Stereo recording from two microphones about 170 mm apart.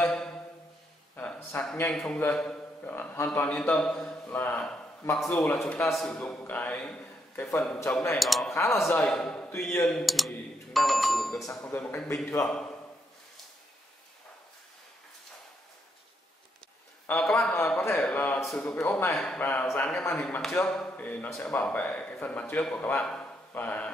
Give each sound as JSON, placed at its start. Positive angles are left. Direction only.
{"t": 0.0, "sound": "music", "side_deg": 5}
{"t": 1.1, "sound": "a man's voice", "side_deg": 10}
{"t": 8.2, "sound": "speech", "side_deg": 0}
{"t": 8.5, "sound": "speech", "side_deg": 15}
{"t": 17.0, "sound": "speech", "side_deg": 5}